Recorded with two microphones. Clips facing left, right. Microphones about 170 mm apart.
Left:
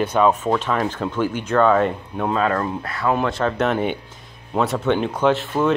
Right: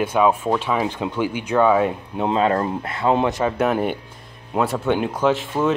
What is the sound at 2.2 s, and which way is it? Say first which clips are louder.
Speech: right 2 dB; 25° right (ahead or behind).